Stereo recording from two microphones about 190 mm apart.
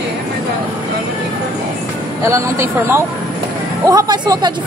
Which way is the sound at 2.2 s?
15° right (ahead or behind).